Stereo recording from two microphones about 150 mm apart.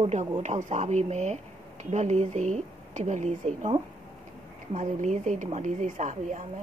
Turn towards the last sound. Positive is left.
turn(degrees=-55)  # may be behind; listen again after turning